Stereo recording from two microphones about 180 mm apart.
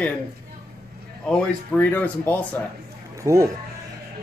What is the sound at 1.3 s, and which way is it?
Speech, 10° left (ahead or behind).